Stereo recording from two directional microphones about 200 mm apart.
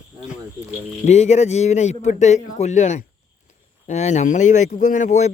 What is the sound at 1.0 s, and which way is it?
Speech, 35° left (ahead or behind).